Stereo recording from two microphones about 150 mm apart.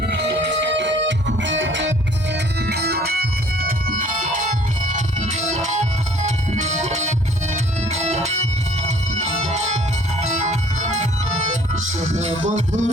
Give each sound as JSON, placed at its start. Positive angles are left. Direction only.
{"t": 2.6, "sound": "music", "side_deg": -90}